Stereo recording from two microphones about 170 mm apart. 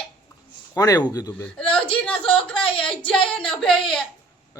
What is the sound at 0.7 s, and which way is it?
Speech, 20° left (ahead or behind).